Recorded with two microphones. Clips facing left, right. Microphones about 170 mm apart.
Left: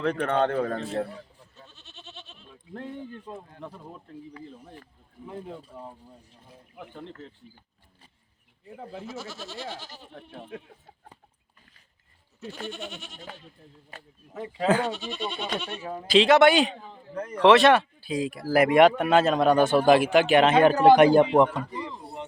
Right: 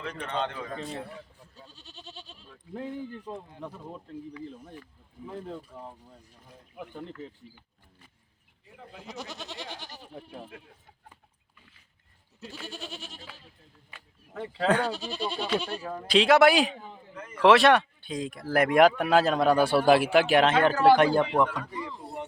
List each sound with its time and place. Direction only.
0.2 s speech: 55° left (ahead or behind)
1.7 s goat: 35° right (ahead or behind)
3.3 s speech: 20° right (ahead or behind)
5.2 s speech: 5° left (ahead or behind)
9.0 s goat: 15° right (ahead or behind)
10.1 s speech: centre (ahead or behind)
12.7 s speech: 35° right (ahead or behind)
13.9 s speech: 40° left (ahead or behind)
14.3 s speech: 5° left (ahead or behind)
14.9 s speech: 35° right (ahead or behind)
15.9 s speech: 5° left (ahead or behind)
17.2 s speech: 35° left (ahead or behind)
17.4 s speech: centre (ahead or behind)
20.5 s a man's voice: 15° left (ahead or behind)